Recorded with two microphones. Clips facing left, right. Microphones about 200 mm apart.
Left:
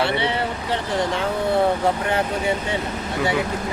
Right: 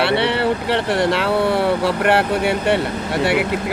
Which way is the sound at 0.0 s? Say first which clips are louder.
Right 5 dB; 70° right (ahead or behind).